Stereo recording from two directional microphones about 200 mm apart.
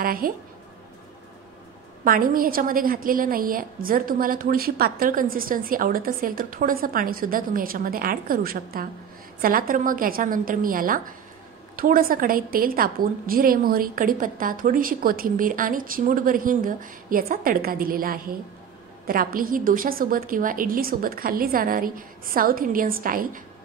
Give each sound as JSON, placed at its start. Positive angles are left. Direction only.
{"t": 0.0, "sound": "a woman's voice", "side_deg": -45}
{"t": 2.0, "sound": "a woman's voice", "side_deg": -45}